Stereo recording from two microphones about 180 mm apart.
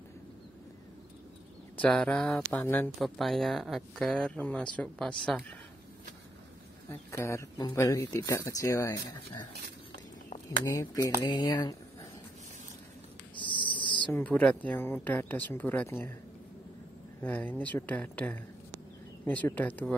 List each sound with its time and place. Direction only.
1.8 s speech: 5° left (ahead or behind)
6.9 s speech: 15° left (ahead or behind)
10.6 s speech: 20° left (ahead or behind)
13.4 s owl: 25° left (ahead or behind)
14.1 s speech: 10° left (ahead or behind)
17.2 s speech: 10° left (ahead or behind)